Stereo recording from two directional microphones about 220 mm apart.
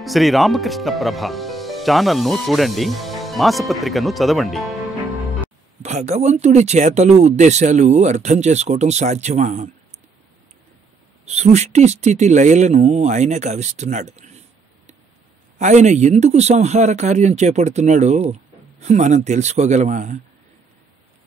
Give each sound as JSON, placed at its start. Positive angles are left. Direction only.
{"t": 0.0, "sound": "speech", "side_deg": 0}
{"t": 5.8, "sound": "speech", "side_deg": -30}
{"t": 11.2, "sound": "speech", "side_deg": -30}
{"t": 15.6, "sound": "speech", "side_deg": -30}